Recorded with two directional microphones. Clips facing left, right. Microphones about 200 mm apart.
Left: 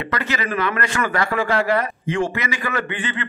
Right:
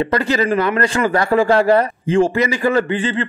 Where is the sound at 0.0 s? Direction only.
35° right (ahead or behind).